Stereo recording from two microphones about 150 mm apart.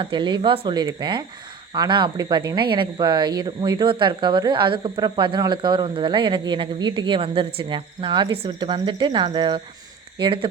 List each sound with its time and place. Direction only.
0.0 s speech: 35° right (ahead or behind)